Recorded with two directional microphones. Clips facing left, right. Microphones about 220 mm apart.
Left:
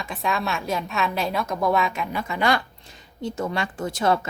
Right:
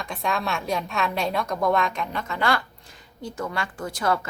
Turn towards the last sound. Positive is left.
turn(degrees=25)  # may be behind; listen again after turning